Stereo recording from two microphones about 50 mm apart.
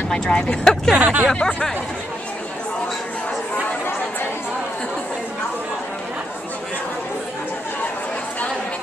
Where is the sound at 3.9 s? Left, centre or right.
Left.